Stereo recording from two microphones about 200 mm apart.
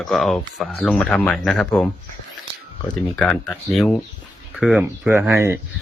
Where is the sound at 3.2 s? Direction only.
5° left (ahead or behind); by 5.6 s 10° right (ahead or behind).